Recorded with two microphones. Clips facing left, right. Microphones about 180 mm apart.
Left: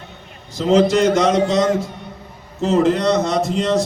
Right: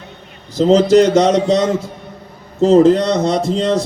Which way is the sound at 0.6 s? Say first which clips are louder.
Right 4 dB; 35° right (ahead or behind).